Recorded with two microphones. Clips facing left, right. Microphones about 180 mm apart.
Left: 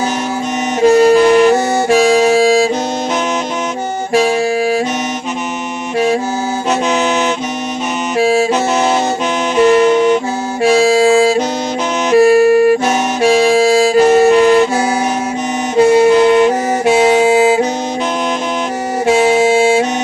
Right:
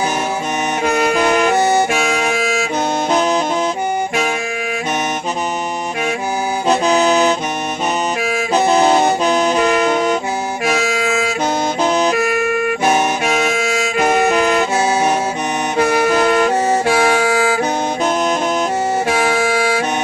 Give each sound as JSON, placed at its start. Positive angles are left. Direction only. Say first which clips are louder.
{"t": 0.8, "sound": "music", "louder": "left 10 dB", "side_deg": 35}
{"t": 6.7, "sound": "music", "louder": "right 2 dB", "side_deg": -35}
{"t": 8.2, "sound": "music", "louder": "left 8 dB", "side_deg": 30}
{"t": 8.5, "sound": "saxophone", "louder": "right 1 dB", "side_deg": -35}
{"t": 9.6, "sound": "music", "louder": "left 6 dB", "side_deg": -35}
{"t": 10.6, "sound": "saxophone", "louder": "left 11 dB", "side_deg": 30}
{"t": 12.1, "sound": "music", "louder": "left 10 dB", "side_deg": 35}
{"t": 15.8, "sound": "music", "louder": "left 7 dB", "side_deg": 25}
{"t": 19.0, "sound": "music", "louder": "left 6 dB", "side_deg": 25}